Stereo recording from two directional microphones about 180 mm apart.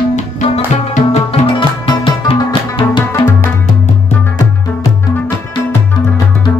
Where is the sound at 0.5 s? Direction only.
35° left (ahead or behind).